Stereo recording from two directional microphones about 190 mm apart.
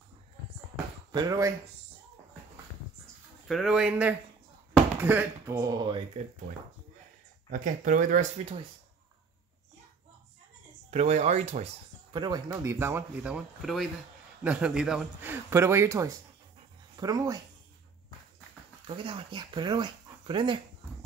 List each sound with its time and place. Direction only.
1.1 s speech: 20° right (ahead or behind)
3.4 s speech: centre (ahead or behind); by 6.0 s 25° right (ahead or behind)
7.5 s speech: 45° right (ahead or behind)
10.9 s speech: 35° right (ahead or behind)
12.1 s speech: 20° right (ahead or behind)
18.9 s speech: 30° right (ahead or behind)